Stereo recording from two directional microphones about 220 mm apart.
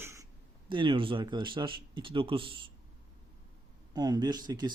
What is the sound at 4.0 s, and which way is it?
Speech, 20° right (ahead or behind).